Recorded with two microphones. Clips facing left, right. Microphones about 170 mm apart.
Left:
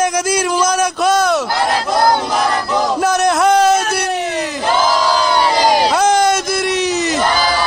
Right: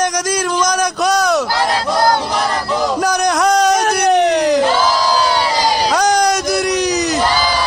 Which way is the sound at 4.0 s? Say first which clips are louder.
Right 7 dB; 65° right (ahead or behind).